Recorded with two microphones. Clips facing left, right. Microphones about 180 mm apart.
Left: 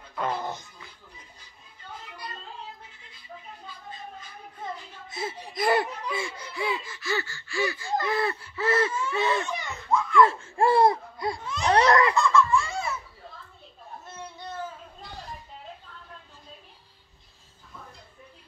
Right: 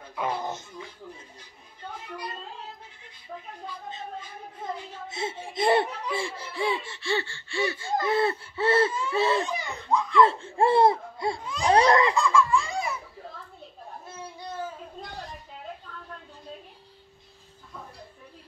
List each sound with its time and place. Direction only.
0.1 s music: 10° right (ahead or behind)
5.1 s laughter: 25° right (ahead or behind)
11.4 s a sound: 10° right (ahead or behind)
11.7 s laughter: 25° right (ahead or behind)
12.1 s laughter: 10° right (ahead or behind)